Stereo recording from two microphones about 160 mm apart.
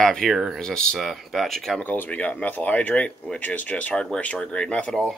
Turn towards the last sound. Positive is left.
turn(degrees=5)  # may be behind; listen again after turning